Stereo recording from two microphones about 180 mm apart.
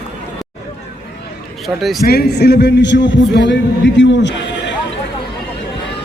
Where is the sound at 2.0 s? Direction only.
60° left (ahead or behind); by 4.7 s 80° left.